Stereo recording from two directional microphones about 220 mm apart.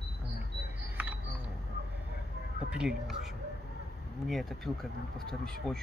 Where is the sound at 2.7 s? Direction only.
5° right (ahead or behind).